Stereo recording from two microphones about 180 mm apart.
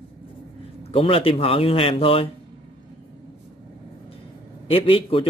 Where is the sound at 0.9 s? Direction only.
30° left (ahead or behind).